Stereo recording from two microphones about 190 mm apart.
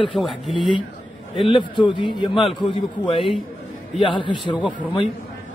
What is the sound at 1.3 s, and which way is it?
A man's voice, 25° left (ahead or behind).